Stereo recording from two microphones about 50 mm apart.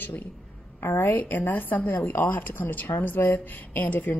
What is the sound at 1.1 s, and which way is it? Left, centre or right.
Speech, left.